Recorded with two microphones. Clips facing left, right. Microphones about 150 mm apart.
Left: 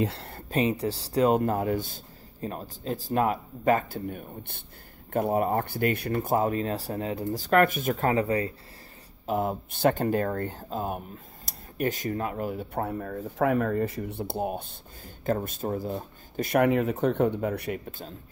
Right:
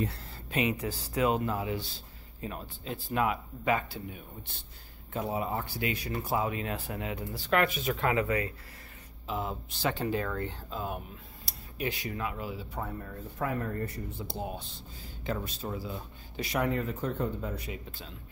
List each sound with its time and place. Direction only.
0.0 s speech: 90° left
0.5 s speech: 35° left (ahead or behind)
9.2 s speech: 50° left (ahead or behind); by 17.7 s 65° left (ahead or behind)